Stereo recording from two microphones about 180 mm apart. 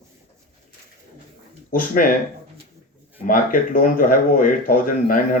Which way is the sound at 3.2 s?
50° left (ahead or behind).